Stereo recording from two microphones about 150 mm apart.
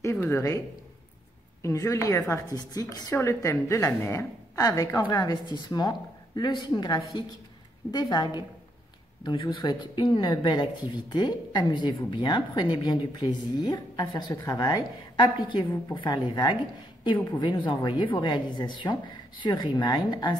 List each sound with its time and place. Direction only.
0.0 s speech: 20° left (ahead or behind)
1.6 s speech: 20° left (ahead or behind)